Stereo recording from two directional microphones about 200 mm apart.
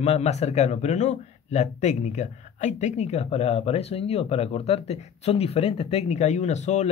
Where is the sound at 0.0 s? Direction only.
35° left (ahead or behind).